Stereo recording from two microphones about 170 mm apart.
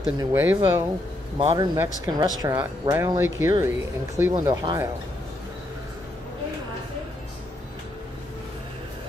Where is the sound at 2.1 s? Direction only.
25° right (ahead or behind).